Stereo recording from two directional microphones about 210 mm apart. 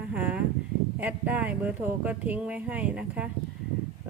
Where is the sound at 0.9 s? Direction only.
5° right (ahead or behind).